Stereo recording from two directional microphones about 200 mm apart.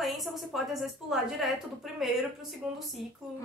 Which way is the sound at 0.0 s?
Centre (ahead or behind).